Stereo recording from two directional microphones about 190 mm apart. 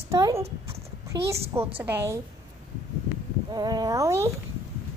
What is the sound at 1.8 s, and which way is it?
Speech, 15° right (ahead or behind).